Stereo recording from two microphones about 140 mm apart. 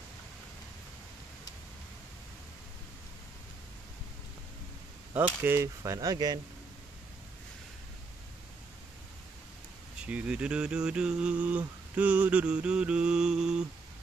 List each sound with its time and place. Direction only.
5.1 s speech: 15° right (ahead or behind)
10.0 s mantra: 10° right (ahead or behind)